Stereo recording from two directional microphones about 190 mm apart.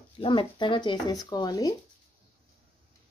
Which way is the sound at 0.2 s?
25° left (ahead or behind).